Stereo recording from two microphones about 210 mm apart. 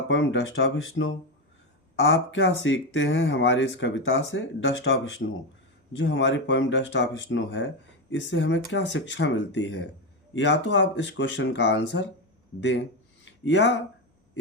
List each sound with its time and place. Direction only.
0.1 s speech: 65° left (ahead or behind)